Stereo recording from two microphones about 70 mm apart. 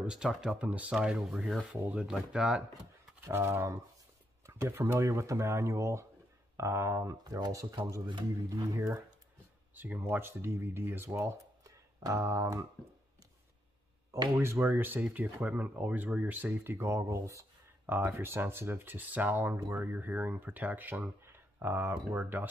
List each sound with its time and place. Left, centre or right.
0.0 s speech: centre
0.6 s speech: centre
1.6 s speech: centre
3.3 s speech: right
7.2 s speech: right
7.5 s speech: right
9.8 s speech: right
12.2 s speech: right
14.3 s speech: right
14.6 s speech: right
16.8 s speech: right
17.8 s speech: right
21.2 s speech: right